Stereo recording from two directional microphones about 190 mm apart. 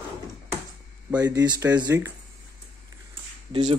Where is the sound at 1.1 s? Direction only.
20° right (ahead or behind).